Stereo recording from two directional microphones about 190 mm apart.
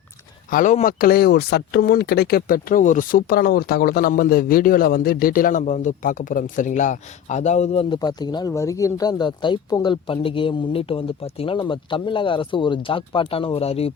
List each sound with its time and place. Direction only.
0.5 s speech: 40° left (ahead or behind)